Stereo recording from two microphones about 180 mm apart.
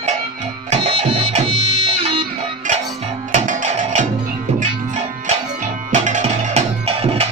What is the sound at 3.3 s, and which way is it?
Music, 45° right (ahead or behind).